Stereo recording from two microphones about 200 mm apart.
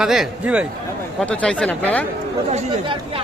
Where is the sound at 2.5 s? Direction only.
35° right (ahead or behind).